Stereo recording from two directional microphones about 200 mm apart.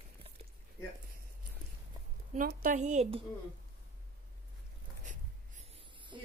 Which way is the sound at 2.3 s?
40° right (ahead or behind).